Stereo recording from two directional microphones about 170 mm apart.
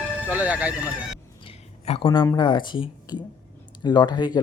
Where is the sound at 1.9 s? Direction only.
30° left (ahead or behind).